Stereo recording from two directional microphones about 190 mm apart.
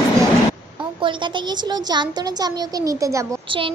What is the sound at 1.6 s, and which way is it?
A child's voice, 20° right (ahead or behind).